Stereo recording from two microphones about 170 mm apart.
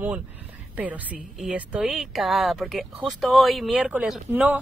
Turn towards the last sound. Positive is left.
turn(degrees=-10)  # may be behind; listen again after turning